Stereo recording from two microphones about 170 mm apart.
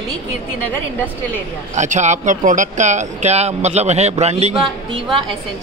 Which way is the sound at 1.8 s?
45° right (ahead or behind).